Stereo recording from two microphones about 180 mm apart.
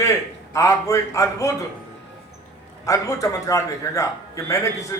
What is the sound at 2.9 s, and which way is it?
A man's voice, 20° left (ahead or behind).